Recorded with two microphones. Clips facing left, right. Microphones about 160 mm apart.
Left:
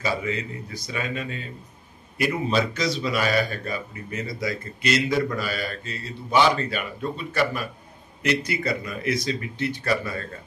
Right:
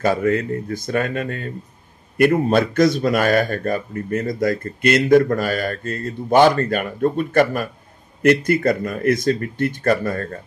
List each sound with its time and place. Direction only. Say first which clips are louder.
0.0 s a man's voice: right 9 dB; 55° right (ahead or behind)